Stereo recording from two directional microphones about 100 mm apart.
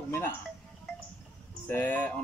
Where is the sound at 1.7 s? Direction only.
15° left (ahead or behind).